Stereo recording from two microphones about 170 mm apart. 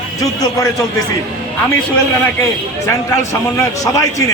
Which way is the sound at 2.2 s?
15° left (ahead or behind).